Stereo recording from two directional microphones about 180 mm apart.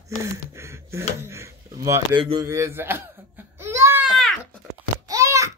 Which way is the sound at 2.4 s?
15° right (ahead or behind).